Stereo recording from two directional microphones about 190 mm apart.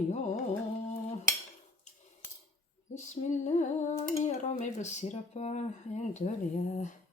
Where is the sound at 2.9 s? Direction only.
40° left (ahead or behind).